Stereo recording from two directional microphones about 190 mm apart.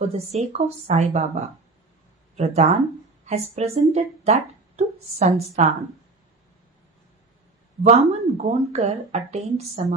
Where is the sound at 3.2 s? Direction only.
35° right (ahead or behind).